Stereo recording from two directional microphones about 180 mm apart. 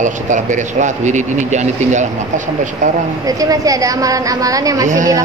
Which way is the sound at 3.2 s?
20° right (ahead or behind).